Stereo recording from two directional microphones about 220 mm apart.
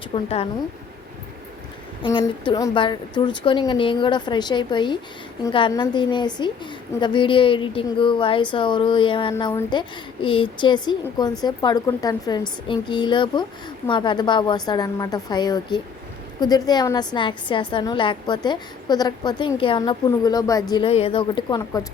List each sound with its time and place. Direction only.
0.1 s a woman's voice: 30° left (ahead or behind)
2.0 s a woman's voice: 20° left (ahead or behind)